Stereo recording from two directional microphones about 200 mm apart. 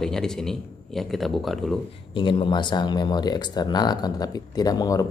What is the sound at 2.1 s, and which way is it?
Speech, 25° left (ahead or behind).